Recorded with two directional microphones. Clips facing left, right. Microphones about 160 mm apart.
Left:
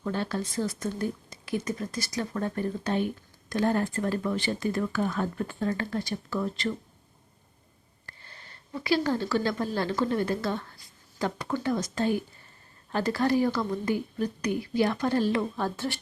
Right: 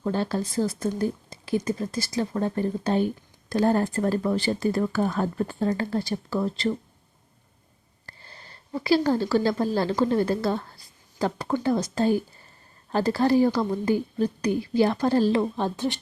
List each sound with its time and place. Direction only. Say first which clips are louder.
0.0 s speech: right 4 dB; 35° right (ahead or behind)
8.0 s a woman's voice: right 3 dB; 35° right (ahead or behind)